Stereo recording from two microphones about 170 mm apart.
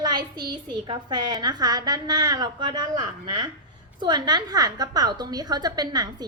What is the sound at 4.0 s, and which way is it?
A woman's voice, 25° right (ahead or behind).